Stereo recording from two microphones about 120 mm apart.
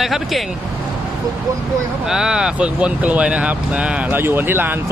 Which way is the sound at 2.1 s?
5° right (ahead or behind).